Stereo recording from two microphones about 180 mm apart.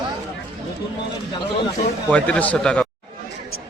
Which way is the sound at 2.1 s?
5° left (ahead or behind).